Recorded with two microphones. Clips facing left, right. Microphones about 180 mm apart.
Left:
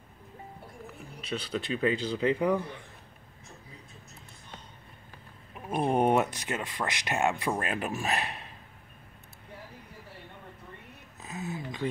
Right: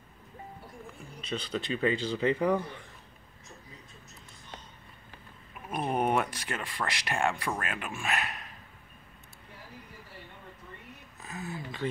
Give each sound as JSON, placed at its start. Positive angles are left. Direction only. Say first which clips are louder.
{"t": 1.2, "sound": "a man's voice", "louder": "left 1 dB", "side_deg": 5}
{"t": 5.5, "sound": "speech", "louder": "left 4 dB", "side_deg": 30}
{"t": 7.7, "sound": "a man's voice", "louder": "left 3 dB", "side_deg": 40}
{"t": 11.2, "sound": "a sound", "louder": "left 2 dB", "side_deg": 20}